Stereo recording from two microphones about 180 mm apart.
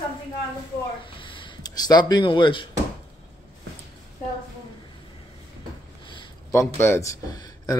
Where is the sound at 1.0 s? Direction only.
30° left (ahead or behind).